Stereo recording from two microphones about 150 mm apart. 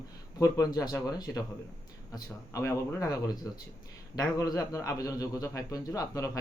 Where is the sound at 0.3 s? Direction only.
25° left (ahead or behind).